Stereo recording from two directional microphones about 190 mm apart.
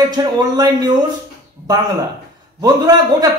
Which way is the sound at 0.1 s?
20° right (ahead or behind).